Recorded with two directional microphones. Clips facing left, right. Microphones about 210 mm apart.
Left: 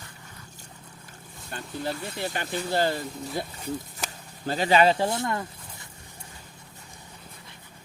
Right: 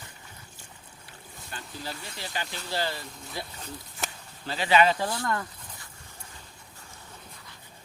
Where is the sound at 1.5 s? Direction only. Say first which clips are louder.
Left 7 dB; 55° left (ahead or behind); by 5.8 s 25° left (ahead or behind).